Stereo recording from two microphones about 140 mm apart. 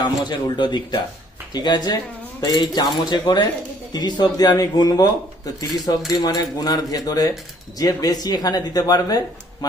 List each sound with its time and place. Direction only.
0.0 s speech: 30° left (ahead or behind)